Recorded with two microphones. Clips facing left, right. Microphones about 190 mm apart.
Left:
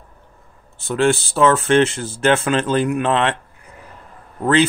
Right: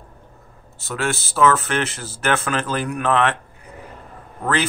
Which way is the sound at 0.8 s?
30° left (ahead or behind).